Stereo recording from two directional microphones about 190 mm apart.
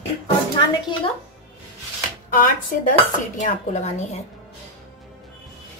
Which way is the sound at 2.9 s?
40° left (ahead or behind).